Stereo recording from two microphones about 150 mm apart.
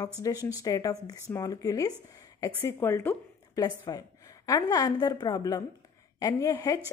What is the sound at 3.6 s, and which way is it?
A woman's voice, 25° left (ahead or behind).